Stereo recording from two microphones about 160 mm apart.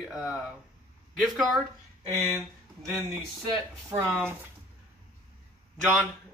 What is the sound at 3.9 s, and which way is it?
Speech, 40° right (ahead or behind).